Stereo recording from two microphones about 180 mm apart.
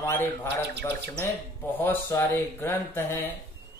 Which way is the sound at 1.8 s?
10° left (ahead or behind).